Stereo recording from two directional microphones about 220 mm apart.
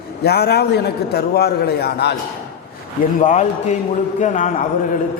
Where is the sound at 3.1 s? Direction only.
35° left (ahead or behind).